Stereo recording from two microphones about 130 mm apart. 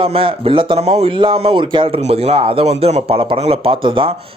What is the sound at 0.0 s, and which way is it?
Speech, 45° right (ahead or behind).